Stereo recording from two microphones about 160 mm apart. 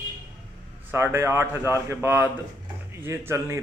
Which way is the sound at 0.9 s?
15° right (ahead or behind).